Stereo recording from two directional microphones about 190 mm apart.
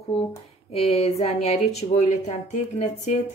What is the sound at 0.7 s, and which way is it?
Speech, 35° left (ahead or behind).